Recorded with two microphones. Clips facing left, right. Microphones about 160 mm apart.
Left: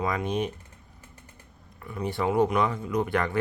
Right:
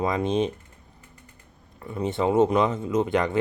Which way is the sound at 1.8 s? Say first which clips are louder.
Right 4 dB; 25° right (ahead or behind).